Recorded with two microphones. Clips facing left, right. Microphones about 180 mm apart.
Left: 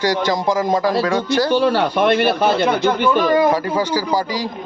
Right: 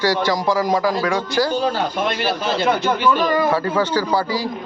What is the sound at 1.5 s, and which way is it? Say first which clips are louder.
Speech: left 5 dB; 65° left (ahead or behind).